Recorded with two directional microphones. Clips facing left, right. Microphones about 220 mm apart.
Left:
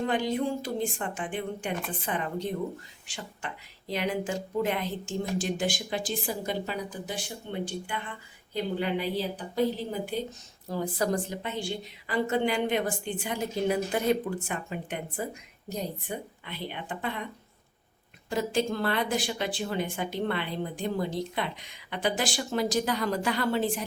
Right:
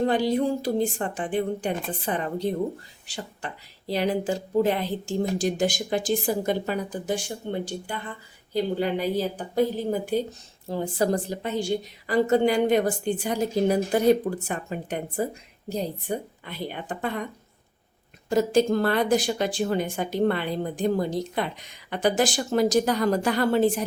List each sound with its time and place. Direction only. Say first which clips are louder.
0.0 s a woman's voice: right 5 dB; 35° right (ahead or behind)
10.7 s speech: right 4 dB; 25° right (ahead or behind); by 17.2 s 45° right (ahead or behind)
18.3 s a woman's voice: right 7 dB; 45° right (ahead or behind)